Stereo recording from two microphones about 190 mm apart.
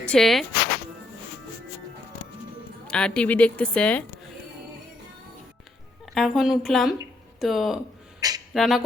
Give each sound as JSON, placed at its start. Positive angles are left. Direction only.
{"t": 0.0, "sound": "speech", "side_deg": 5}
{"t": 2.9, "sound": "a woman's voice", "side_deg": 5}
{"t": 6.1, "sound": "a woman's voice", "side_deg": 0}
{"t": 8.2, "sound": "a sound", "side_deg": -20}
{"t": 8.5, "sound": "a woman's voice", "side_deg": 0}